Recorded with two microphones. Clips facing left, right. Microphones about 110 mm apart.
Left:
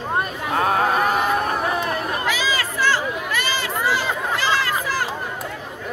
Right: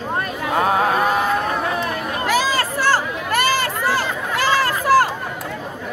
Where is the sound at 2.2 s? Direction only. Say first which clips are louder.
Right 4 dB; 50° right (ahead or behind).